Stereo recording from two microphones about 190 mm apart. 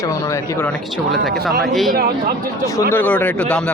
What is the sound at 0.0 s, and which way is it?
Speech, 15° left (ahead or behind).